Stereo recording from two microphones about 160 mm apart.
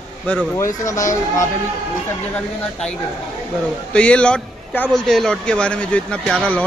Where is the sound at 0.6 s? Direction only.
20° left (ahead or behind).